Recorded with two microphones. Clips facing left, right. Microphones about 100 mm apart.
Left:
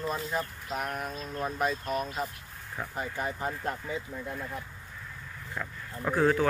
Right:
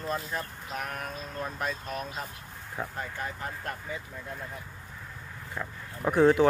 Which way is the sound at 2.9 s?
20° left (ahead or behind).